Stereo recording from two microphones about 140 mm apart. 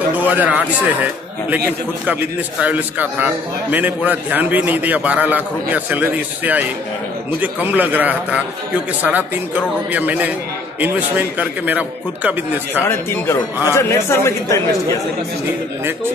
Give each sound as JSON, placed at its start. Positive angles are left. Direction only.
{"t": 0.2, "sound": "speech", "side_deg": -10}
{"t": 2.0, "sound": "a man's voice", "side_deg": -10}
{"t": 11.3, "sound": "a man's voice", "side_deg": -10}
{"t": 12.8, "sound": "a man's voice", "side_deg": 20}